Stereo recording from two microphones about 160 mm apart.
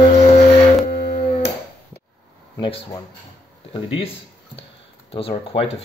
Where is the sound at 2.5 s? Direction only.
30° left (ahead or behind).